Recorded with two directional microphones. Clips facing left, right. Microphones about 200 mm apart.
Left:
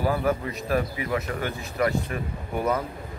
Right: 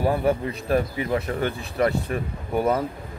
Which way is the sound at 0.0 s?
25° right (ahead or behind).